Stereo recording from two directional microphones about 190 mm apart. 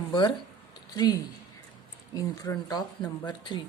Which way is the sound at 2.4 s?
20° left (ahead or behind).